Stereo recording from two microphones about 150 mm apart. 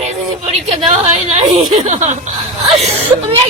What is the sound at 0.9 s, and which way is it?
Speech, 50° right (ahead or behind).